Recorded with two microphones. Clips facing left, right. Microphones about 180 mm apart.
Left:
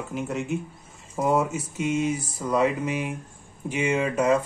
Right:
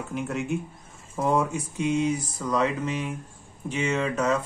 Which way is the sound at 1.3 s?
5° left (ahead or behind).